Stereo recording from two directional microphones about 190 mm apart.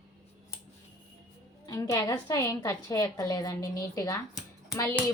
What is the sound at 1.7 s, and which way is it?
A woman's voice, 20° left (ahead or behind).